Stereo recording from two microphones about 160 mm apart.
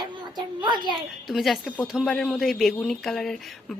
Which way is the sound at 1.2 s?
Centre (ahead or behind).